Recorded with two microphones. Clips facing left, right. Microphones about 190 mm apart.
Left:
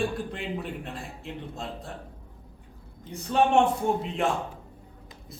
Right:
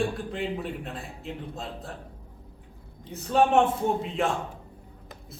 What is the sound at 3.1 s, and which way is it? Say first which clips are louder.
Speech: right 1 dB; centre (ahead or behind).